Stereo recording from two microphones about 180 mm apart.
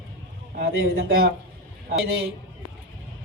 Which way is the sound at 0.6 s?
55° right (ahead or behind).